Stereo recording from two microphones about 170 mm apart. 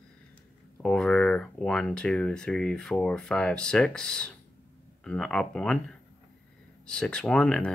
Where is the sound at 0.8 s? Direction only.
5° left (ahead or behind).